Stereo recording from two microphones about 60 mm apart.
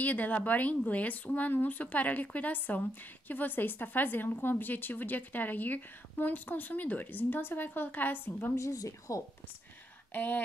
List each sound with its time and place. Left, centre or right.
0.0 s a woman's voice: left
8.5 s speech: left
10.1 s speech: left